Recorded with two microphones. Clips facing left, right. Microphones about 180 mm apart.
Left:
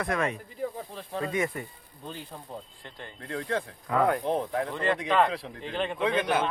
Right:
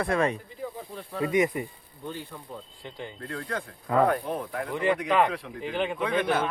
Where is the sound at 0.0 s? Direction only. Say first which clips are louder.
Right 3 dB; 30° right (ahead or behind).